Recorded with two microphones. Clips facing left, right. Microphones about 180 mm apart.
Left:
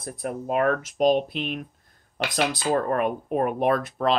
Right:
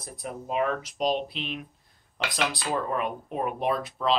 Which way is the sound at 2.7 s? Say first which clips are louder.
Left 5 dB; 50° left (ahead or behind).